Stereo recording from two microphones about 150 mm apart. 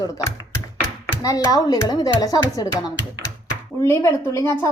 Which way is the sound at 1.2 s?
25° left (ahead or behind).